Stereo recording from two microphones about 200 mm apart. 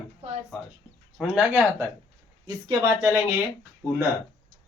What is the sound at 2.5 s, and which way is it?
Speech, 20° right (ahead or behind).